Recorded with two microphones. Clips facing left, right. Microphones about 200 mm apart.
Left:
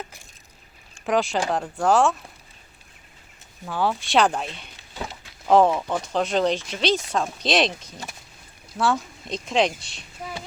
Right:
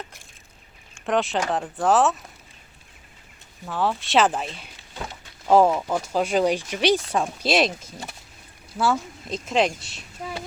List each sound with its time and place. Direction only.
1.0 s speech: centre (ahead or behind)
3.7 s speech: centre (ahead or behind)
7.9 s speech: 25° right (ahead or behind)
8.8 s speech: 5° right (ahead or behind)